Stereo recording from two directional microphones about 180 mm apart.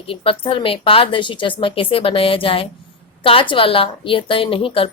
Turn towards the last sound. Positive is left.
turn(degrees=30)  # may be behind; listen again after turning